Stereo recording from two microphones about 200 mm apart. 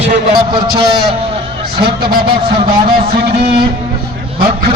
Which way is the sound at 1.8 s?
50° right (ahead or behind).